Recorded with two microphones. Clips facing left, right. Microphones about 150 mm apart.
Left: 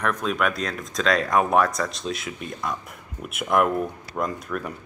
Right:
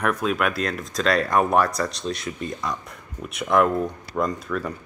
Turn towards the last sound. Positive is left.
turn(degrees=5)  # may be behind; listen again after turning